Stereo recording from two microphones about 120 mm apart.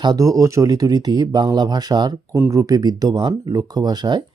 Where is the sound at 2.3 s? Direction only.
25° right (ahead or behind).